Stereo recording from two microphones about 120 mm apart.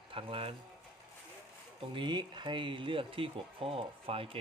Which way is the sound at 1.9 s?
40° right (ahead or behind).